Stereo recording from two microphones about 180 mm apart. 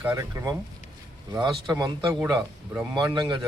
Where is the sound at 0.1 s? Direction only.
20° right (ahead or behind).